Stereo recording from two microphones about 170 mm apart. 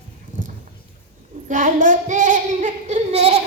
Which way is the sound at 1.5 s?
50° right (ahead or behind).